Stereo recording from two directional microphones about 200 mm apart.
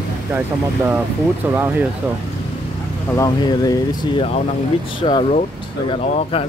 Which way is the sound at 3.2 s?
20° left (ahead or behind).